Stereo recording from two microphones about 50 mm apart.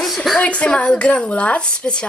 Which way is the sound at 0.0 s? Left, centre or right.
Centre.